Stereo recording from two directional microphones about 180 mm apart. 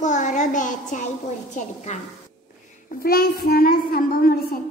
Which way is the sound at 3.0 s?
55° left (ahead or behind).